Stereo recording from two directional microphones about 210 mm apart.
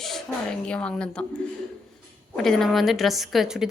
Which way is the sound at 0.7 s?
5° left (ahead or behind).